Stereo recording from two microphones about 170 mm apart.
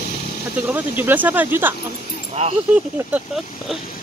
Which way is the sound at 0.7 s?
10° right (ahead or behind).